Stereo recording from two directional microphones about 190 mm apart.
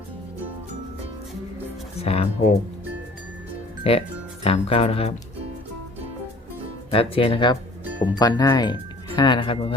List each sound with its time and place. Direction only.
2.0 s speech: 35° left (ahead or behind)
3.9 s speech: 30° left (ahead or behind)
6.9 s speech: 30° left (ahead or behind)